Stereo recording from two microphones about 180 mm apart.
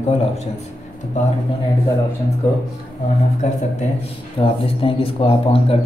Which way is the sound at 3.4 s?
40° left (ahead or behind).